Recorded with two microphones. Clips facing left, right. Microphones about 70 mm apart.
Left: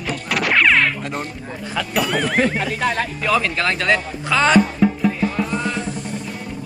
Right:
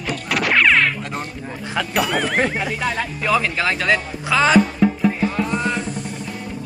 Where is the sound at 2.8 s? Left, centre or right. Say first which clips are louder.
Left 4 dB; left.